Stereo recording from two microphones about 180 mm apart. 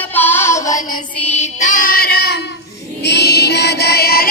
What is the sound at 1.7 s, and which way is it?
Child singing, 50° left (ahead or behind).